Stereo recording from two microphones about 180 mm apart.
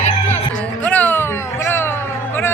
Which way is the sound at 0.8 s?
10° left (ahead or behind).